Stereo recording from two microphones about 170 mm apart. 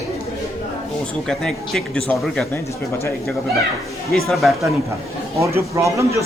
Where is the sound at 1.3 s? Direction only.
5° left (ahead or behind).